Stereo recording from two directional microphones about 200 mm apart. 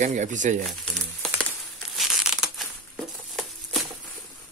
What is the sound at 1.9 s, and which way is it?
Crushing, centre (ahead or behind).